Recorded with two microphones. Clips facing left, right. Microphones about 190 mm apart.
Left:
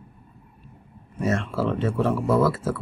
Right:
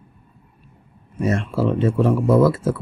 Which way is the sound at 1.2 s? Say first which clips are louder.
Right 4 dB; 15° right (ahead or behind).